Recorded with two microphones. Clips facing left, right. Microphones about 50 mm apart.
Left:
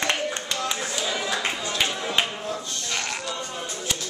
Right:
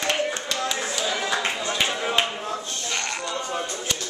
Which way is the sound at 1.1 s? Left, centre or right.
Centre.